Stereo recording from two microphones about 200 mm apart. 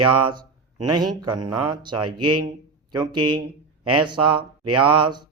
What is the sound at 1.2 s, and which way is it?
Speech, 20° right (ahead or behind).